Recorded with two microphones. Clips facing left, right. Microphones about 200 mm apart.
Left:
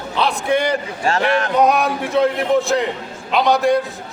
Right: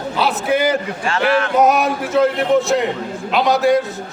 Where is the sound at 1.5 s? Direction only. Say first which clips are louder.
Even; 5° right (ahead or behind).